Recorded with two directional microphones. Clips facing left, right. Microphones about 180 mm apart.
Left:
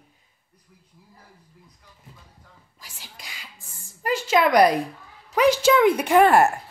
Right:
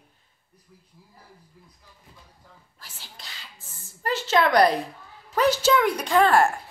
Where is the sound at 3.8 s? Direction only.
5° right (ahead or behind).